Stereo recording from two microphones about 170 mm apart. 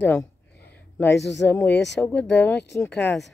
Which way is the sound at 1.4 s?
10° left (ahead or behind).